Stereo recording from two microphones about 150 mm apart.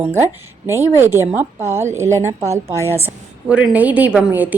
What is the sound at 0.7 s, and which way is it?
A woman's voice, 15° right (ahead or behind).